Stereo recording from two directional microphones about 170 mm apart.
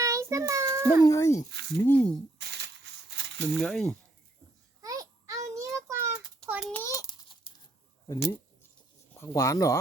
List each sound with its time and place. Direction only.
0.0 s child singing: 20° right (ahead or behind)
1.0 s speech: 20° left (ahead or behind)
1.5 s speech: 85° right
1.7 s speech: 10° left (ahead or behind)
2.4 s a sound: 90° right
3.6 s speech: 5° left (ahead or behind)
4.8 s a sound: 20° right (ahead or behind)
6.8 s a sound: 20° left (ahead or behind)
8.0 s speech: 20° left (ahead or behind)